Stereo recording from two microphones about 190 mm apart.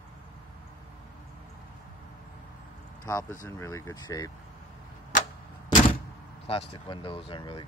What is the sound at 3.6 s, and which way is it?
Speech, 15° left (ahead or behind).